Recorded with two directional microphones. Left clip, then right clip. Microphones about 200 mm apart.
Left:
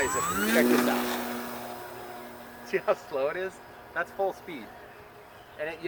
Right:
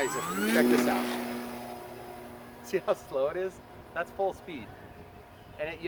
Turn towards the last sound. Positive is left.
turn(degrees=5)  # may be behind; listen again after turning